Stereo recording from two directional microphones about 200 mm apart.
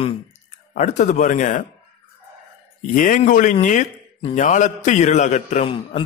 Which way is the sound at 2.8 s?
40° left (ahead or behind).